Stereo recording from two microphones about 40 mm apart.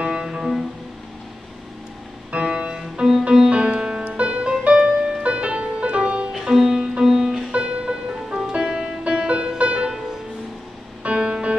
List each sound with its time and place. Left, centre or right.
0.0 s music: right
2.4 s music: right
6.4 s music: centre
11.1 s music: centre